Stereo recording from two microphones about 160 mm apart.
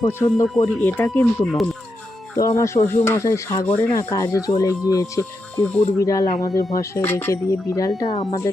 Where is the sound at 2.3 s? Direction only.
20° left (ahead or behind).